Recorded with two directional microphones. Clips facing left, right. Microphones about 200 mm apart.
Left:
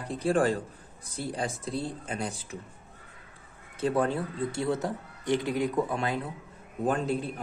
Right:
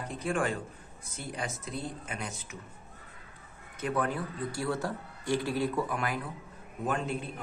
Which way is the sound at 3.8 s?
30° left (ahead or behind).